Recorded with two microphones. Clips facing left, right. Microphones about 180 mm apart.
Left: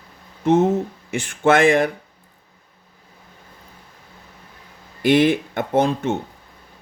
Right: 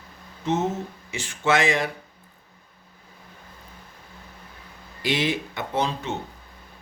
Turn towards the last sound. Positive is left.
turn(degrees=50)  # may be behind; listen again after turning